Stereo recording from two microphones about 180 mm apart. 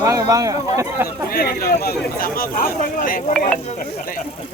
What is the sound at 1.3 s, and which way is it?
Speech, 55° left (ahead or behind).